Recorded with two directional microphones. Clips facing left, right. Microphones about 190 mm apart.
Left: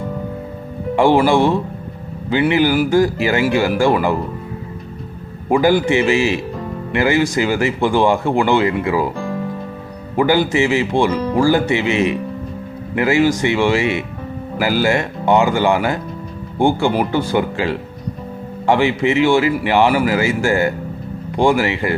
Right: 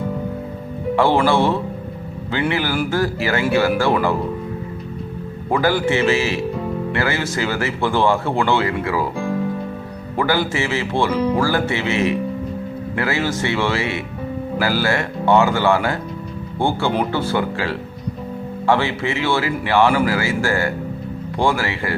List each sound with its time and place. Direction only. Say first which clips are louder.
0.9 s speech: left 3 dB; 15° left (ahead or behind)
5.5 s speech: left 4 dB; 15° left (ahead or behind)
10.2 s speech: left 5 dB; 15° left (ahead or behind)